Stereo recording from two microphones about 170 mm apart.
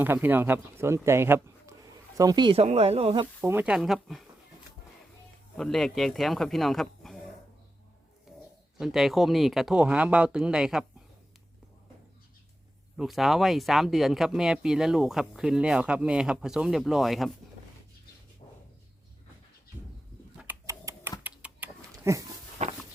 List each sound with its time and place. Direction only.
0.0 s speech: 10° right (ahead or behind); by 3.2 s 35° right (ahead or behind)
3.4 s speech: 10° right (ahead or behind)
3.8 s speech: centre (ahead or behind)
5.5 s speech: 5° left (ahead or behind)
8.3 s a sound: centre (ahead or behind)
8.8 s speech: centre (ahead or behind)
13.0 s speech: centre (ahead or behind)
20.4 s typing: 15° right (ahead or behind)
21.8 s pig: 20° right (ahead or behind)
22.6 s a sound: 40° right (ahead or behind)